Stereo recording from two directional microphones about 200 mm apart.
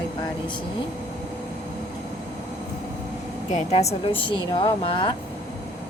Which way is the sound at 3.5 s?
35° left (ahead or behind).